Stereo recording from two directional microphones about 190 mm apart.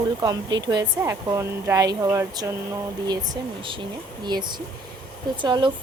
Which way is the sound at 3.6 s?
25° right (ahead or behind).